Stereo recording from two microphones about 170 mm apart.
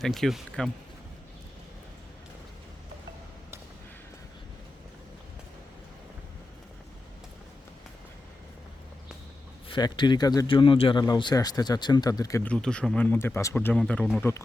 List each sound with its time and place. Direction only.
0.0 s speech: centre (ahead or behind)
9.6 s speech: 25° left (ahead or behind)
12.4 s speech: 5° left (ahead or behind)